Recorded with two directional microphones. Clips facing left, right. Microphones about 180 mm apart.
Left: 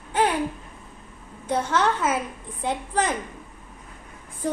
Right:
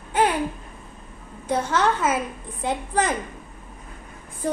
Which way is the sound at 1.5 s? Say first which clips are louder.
Right 1 dB; 10° right (ahead or behind).